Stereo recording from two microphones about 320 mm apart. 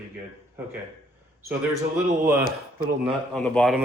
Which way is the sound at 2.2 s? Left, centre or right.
Right.